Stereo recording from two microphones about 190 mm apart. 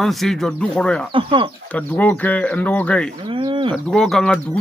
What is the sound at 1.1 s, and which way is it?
Speech, 25° right (ahead or behind).